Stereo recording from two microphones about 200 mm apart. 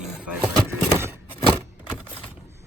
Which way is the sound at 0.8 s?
10° right (ahead or behind).